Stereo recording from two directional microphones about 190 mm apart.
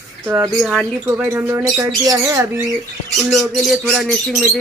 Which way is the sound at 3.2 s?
Centre (ahead or behind).